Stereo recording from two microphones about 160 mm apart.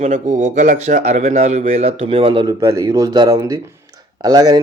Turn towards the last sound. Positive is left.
turn(degrees=-25)  # may be behind; listen again after turning